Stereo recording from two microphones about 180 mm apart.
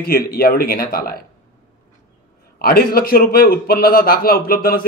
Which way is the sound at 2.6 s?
55° left (ahead or behind).